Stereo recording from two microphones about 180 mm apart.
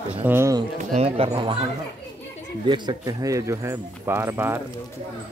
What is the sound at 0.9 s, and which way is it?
Speech, 35° right (ahead or behind).